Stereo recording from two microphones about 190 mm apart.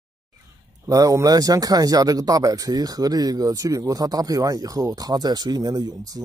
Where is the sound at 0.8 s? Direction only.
20° right (ahead or behind).